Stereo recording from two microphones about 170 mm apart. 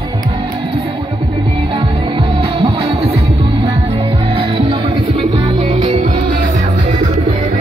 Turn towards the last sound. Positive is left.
turn(degrees=-40)  # may be behind; listen again after turning